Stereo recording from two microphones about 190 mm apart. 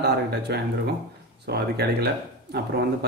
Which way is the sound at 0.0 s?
60° right (ahead or behind).